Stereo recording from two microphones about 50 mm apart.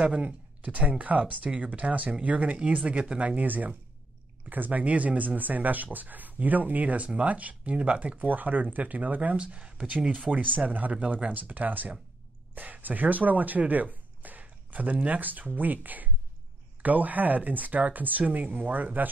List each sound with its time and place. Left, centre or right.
0.0 s speech: right